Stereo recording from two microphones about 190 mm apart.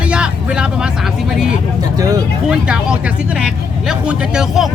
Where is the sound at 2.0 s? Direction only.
20° right (ahead or behind).